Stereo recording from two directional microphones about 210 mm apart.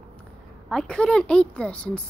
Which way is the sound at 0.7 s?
5° left (ahead or behind).